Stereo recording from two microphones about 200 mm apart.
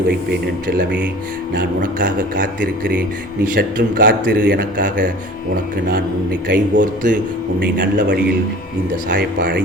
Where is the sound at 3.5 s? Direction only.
45° right (ahead or behind).